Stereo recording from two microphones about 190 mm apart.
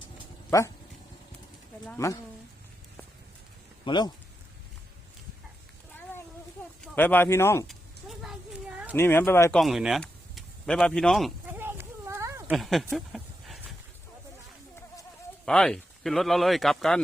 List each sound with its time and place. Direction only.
1.9 s speech: 15° left (ahead or behind)
3.8 s speech: 25° left (ahead or behind)
6.8 s speech: 10° left (ahead or behind)
7.7 s a sound: centre (ahead or behind)
9.0 s speech: 10° left (ahead or behind)
9.6 s speech: centre (ahead or behind)
11.4 s a sound: 10° right (ahead or behind)
12.5 s a sound: centre (ahead or behind)
15.4 s speech: 5° left (ahead or behind)